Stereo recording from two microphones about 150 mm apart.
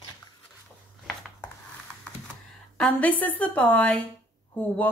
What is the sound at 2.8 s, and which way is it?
A woman's voice, 10° left (ahead or behind).